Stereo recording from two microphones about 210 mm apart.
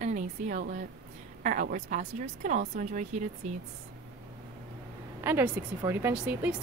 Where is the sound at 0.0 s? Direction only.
35° right (ahead or behind).